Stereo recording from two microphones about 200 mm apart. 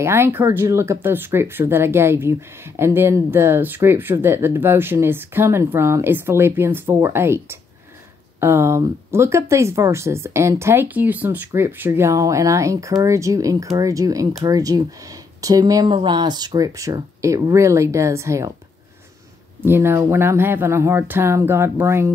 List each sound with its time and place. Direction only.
0.0 s speech: 10° right (ahead or behind)
19.6 s speech: 10° right (ahead or behind)